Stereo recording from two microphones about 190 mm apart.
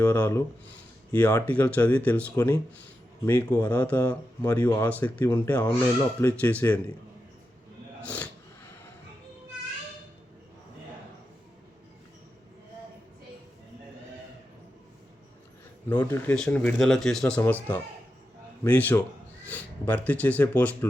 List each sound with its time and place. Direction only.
0.0 s speech: 10° left (ahead or behind)
4.6 s speech: 20° left (ahead or behind)
4.9 s speech: 10° left (ahead or behind)
8.0 s speech: 5° left (ahead or behind)
15.9 s speech: 10° left (ahead or behind)